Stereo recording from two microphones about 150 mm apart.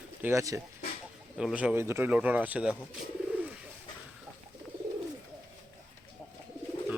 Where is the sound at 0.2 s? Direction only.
20° right (ahead or behind).